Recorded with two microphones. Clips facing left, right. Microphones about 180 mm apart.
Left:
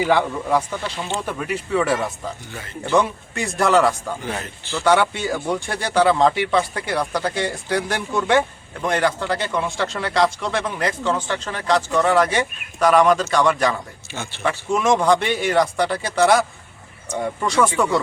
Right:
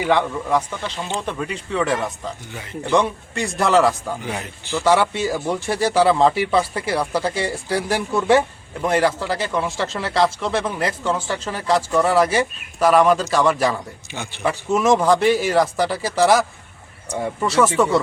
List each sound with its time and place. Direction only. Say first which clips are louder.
0.1 s speech: right 4 dB; 10° left (ahead or behind)
2.5 s speech: right 1 dB; 15° right (ahead or behind)
2.9 s speech: even; centre (ahead or behind)
4.3 s speech: right 1 dB; 15° right (ahead or behind)
4.8 s speech: even; centre (ahead or behind)
14.1 s speech: right 1 dB; 15° right (ahead or behind)
14.7 s speech: right 1 dB; 5° right (ahead or behind)